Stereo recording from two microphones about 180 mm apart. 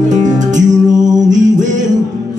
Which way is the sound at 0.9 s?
20° right (ahead or behind).